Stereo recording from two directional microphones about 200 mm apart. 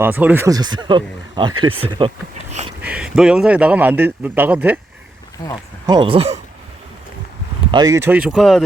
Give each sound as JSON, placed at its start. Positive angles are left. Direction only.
{"t": 0.0, "sound": "speech", "side_deg": -10}
{"t": 2.8, "sound": "a man's voice", "side_deg": -5}
{"t": 5.4, "sound": "speech", "side_deg": 25}
{"t": 5.8, "sound": "speech", "side_deg": -20}
{"t": 7.7, "sound": "a man's voice", "side_deg": -20}